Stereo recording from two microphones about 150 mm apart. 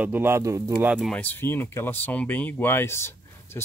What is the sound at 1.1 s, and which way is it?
Speech, 10° left (ahead or behind).